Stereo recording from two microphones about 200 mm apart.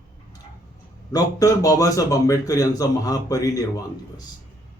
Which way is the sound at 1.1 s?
15° left (ahead or behind).